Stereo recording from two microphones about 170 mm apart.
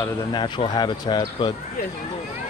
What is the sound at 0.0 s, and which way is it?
Speech, 25° left (ahead or behind).